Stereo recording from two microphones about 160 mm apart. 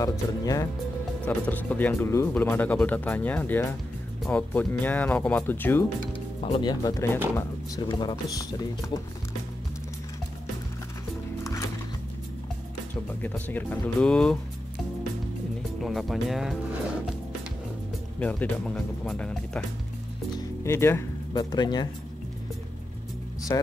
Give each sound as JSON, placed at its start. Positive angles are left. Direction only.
{"t": 0.0, "sound": "speech", "side_deg": 20}
{"t": 1.2, "sound": "speech", "side_deg": 10}
{"t": 6.4, "sound": "speech", "side_deg": 30}
{"t": 13.2, "sound": "speech", "side_deg": 10}
{"t": 15.8, "sound": "speech", "side_deg": 0}
{"t": 18.2, "sound": "speech", "side_deg": 10}
{"t": 20.3, "sound": "speech", "side_deg": 15}
{"t": 23.5, "sound": "speech", "side_deg": 20}